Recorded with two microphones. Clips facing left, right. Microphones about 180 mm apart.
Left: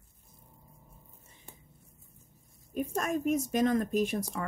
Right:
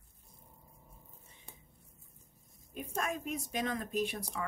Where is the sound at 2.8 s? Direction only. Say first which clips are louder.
Left 6 dB; 45° left (ahead or behind).